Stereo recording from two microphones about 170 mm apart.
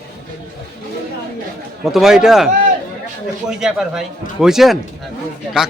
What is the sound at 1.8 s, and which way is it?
Speech, centre (ahead or behind).